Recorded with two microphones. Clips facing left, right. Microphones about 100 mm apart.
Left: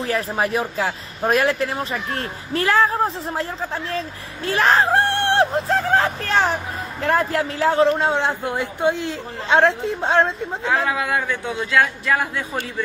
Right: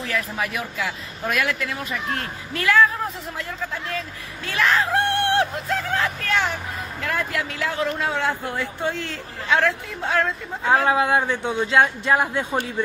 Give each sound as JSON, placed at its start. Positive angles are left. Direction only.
{"t": 0.0, "sound": "speech", "side_deg": 35}
{"t": 9.6, "sound": "speech", "side_deg": 30}
{"t": 10.9, "sound": "a man's voice", "side_deg": -25}